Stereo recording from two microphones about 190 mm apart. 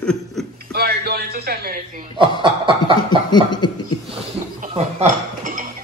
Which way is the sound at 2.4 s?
25° right (ahead or behind).